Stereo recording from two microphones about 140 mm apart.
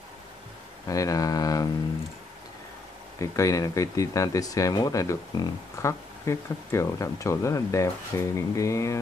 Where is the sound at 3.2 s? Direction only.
25° left (ahead or behind).